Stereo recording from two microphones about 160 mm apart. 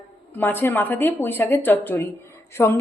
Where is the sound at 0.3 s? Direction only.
15° left (ahead or behind).